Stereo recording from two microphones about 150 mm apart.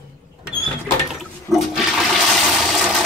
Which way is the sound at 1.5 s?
Centre (ahead or behind).